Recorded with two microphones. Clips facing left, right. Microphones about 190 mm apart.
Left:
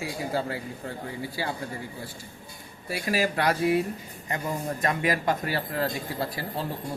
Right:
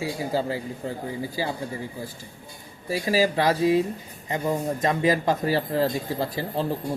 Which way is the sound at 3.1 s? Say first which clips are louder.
Right 4 dB; 30° right (ahead or behind).